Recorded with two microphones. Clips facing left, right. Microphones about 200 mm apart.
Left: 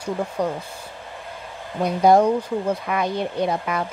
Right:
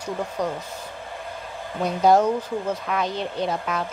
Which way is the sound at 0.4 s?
10° left (ahead or behind).